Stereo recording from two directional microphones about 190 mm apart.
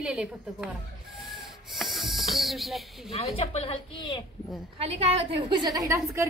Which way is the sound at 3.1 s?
30° left (ahead or behind).